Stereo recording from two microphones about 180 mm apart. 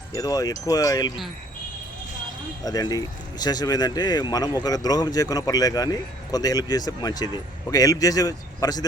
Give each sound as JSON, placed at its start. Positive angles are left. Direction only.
{"t": 0.1, "sound": "speech", "side_deg": 20}
{"t": 2.6, "sound": "speech", "side_deg": 20}